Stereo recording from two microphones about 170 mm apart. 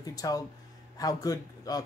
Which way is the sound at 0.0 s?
20° left (ahead or behind).